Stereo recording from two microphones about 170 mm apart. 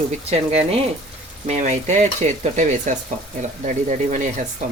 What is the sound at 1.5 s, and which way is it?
Frying, 45° right (ahead or behind).